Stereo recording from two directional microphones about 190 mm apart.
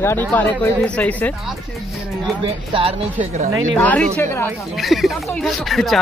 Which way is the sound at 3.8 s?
10° left (ahead or behind).